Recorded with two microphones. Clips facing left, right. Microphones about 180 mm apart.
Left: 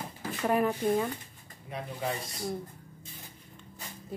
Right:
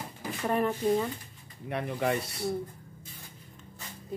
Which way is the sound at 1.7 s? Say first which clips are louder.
Right 5 dB; 65° right (ahead or behind).